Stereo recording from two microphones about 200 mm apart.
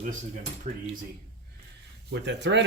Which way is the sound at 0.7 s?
35° right (ahead or behind).